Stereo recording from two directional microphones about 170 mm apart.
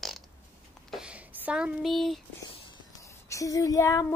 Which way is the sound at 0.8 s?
5° right (ahead or behind).